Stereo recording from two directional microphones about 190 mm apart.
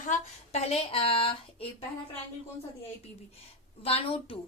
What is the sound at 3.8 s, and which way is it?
Speech, 30° left (ahead or behind).